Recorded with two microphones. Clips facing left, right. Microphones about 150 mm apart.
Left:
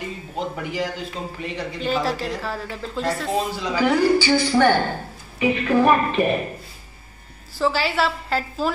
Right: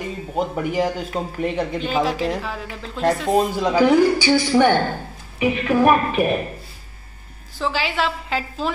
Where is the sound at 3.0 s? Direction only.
55° right (ahead or behind).